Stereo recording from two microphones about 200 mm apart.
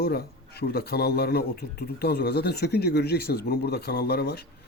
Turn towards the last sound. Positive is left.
turn(degrees=55)  # may be behind; listen again after turning